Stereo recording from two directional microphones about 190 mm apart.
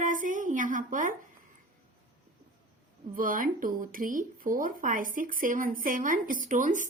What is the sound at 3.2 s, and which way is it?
Speech, 45° right (ahead or behind).